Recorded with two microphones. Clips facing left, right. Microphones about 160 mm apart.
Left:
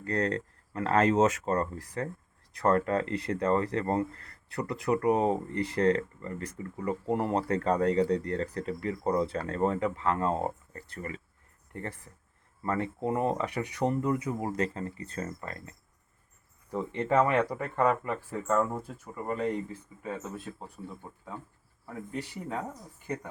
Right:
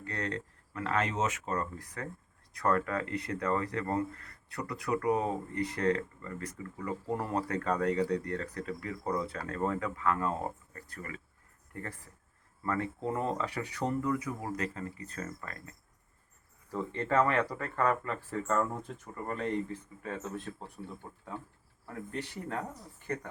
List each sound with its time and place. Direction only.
0.0 s speech: 40° left (ahead or behind)
16.7 s speech: 20° left (ahead or behind)
21.8 s speech: 10° left (ahead or behind)